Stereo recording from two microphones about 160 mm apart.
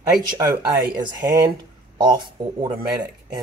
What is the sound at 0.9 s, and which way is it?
Speech, 25° right (ahead or behind).